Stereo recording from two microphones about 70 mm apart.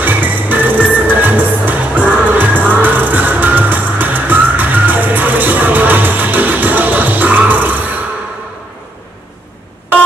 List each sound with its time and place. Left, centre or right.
0.0 s music: right